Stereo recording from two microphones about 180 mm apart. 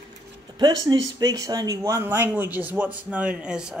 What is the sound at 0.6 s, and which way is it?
Speech, 25° right (ahead or behind).